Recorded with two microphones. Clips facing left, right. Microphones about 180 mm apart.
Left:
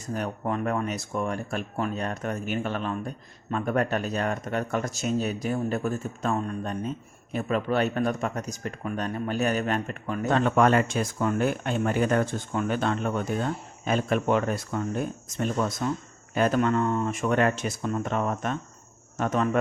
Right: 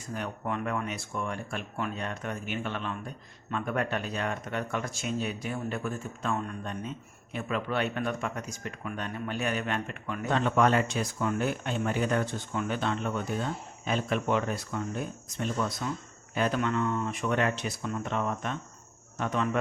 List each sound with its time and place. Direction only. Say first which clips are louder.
0.1 s speech: left 4 dB; 40° left (ahead or behind)